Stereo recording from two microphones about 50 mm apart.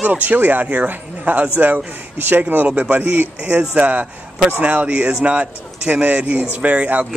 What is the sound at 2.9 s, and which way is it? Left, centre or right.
A man's voice, right.